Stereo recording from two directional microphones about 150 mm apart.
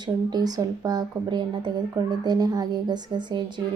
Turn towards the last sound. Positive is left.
turn(degrees=-30)  # may be behind; listen again after turning